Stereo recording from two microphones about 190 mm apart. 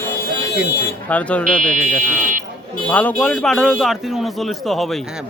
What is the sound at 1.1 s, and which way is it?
Speech, 5° left (ahead or behind).